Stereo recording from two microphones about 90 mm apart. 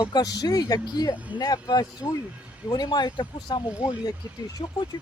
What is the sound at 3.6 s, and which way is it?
Speech, 10° right (ahead or behind).